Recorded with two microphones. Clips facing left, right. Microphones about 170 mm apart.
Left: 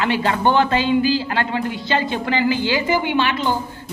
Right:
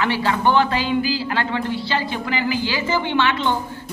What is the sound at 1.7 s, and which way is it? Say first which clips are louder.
A woman's voice: left 2 dB; 20° left (ahead or behind).